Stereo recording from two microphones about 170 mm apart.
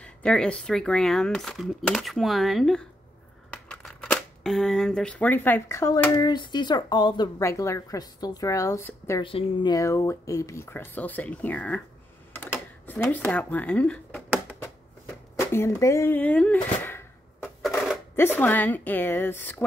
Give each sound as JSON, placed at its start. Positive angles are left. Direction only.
{"t": 0.0, "sound": "speech", "side_deg": 5}
{"t": 9.2, "sound": "speech", "side_deg": 30}
{"t": 12.8, "sound": "speech", "side_deg": 10}
{"t": 15.3, "sound": "a sound", "side_deg": 15}
{"t": 18.4, "sound": "speech", "side_deg": 10}